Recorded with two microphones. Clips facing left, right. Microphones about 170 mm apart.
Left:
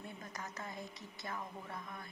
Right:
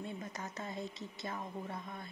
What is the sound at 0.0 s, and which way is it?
Speech, 25° right (ahead or behind).